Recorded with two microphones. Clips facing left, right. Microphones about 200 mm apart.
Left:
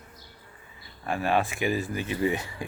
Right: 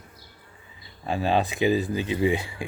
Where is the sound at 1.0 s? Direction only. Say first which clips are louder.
Right 2 dB; 20° right (ahead or behind).